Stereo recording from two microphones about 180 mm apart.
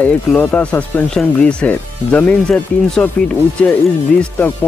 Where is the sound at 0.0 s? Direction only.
10° left (ahead or behind).